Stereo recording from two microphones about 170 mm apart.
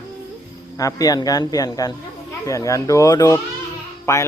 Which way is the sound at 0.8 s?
20° left (ahead or behind).